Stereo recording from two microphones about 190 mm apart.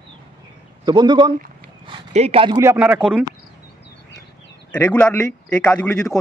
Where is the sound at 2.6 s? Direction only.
5° right (ahead or behind).